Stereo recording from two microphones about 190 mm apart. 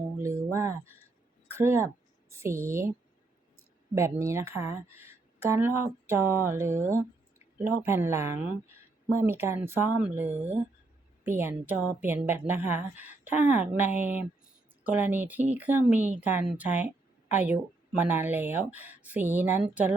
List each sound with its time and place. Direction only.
0.2 s a sound: 15° right (ahead or behind)
1.5 s a woman's voice: 15° right (ahead or behind)
3.9 s speech: 15° right (ahead or behind)